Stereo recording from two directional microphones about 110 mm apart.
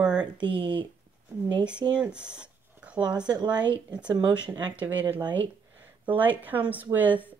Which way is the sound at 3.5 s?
45° right (ahead or behind).